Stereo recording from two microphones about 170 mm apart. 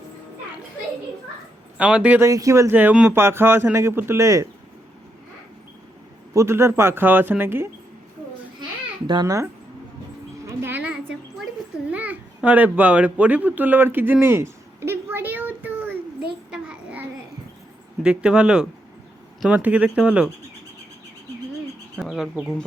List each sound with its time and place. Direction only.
1.8 s speech: 5° right (ahead or behind)
2.2 s speech: 20° right (ahead or behind)
6.3 s speech: 15° right (ahead or behind)
9.0 s a child's voice: 25° right (ahead or behind)
10.4 s a sound: 15° right (ahead or behind)
18.0 s speech: 5° right (ahead or behind)
21.9 s speech: centre (ahead or behind)